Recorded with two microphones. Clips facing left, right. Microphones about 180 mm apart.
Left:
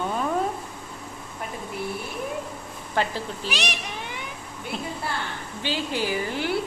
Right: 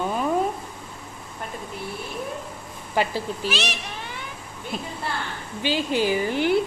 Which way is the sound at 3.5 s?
15° left (ahead or behind).